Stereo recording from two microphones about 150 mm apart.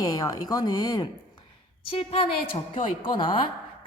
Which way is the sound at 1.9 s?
35° left (ahead or behind).